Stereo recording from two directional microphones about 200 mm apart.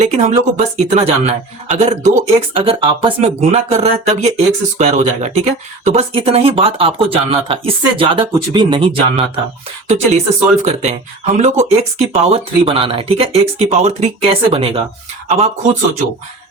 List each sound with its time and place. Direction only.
0.0 s speech: 35° right (ahead or behind)